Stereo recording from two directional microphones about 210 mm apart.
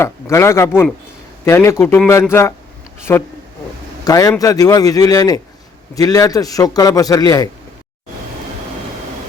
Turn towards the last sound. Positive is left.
turn(degrees=15)  # may be behind; listen again after turning